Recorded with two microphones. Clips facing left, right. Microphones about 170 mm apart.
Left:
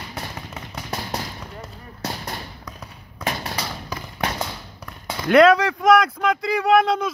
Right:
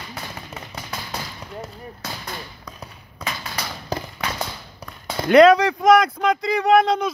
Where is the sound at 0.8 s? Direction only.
40° left (ahead or behind).